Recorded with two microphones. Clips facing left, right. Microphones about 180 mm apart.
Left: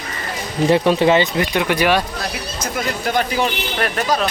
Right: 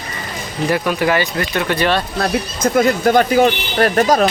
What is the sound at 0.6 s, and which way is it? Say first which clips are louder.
Speech: left 3 dB; 25° left (ahead or behind).